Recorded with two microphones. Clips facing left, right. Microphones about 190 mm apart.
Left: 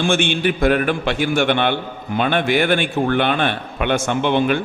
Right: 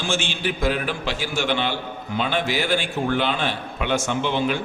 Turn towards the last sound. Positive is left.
turn(degrees=55)  # may be behind; listen again after turning